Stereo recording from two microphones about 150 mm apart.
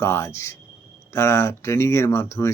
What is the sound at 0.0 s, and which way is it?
Speech, 15° left (ahead or behind).